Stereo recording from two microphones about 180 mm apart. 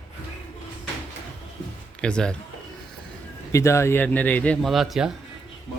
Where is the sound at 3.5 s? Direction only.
15° left (ahead or behind); by 5.1 s centre (ahead or behind).